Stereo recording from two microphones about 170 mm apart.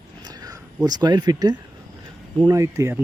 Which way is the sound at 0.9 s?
25° right (ahead or behind).